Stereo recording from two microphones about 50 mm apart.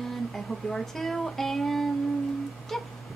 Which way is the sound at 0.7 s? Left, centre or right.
Centre.